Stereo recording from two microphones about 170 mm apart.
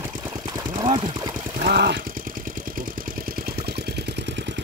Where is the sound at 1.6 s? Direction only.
70° right (ahead or behind).